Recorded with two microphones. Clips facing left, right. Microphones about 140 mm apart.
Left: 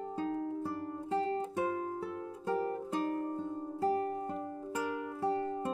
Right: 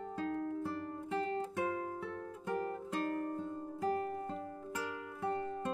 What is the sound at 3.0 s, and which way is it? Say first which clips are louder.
Music: left 1 dB; 15° left (ahead or behind).